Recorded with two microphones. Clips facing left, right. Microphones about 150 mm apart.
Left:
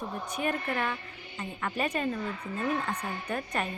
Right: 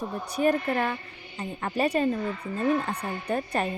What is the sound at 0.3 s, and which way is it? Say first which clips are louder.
A woman's voice: right 8 dB; 35° right (ahead or behind).